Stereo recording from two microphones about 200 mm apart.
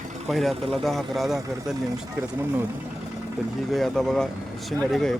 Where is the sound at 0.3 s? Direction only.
Centre (ahead or behind).